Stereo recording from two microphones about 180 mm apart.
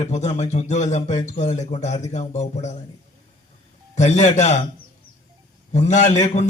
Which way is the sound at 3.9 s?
40° left (ahead or behind).